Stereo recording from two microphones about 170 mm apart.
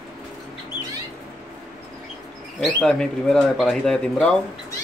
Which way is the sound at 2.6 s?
5° left (ahead or behind).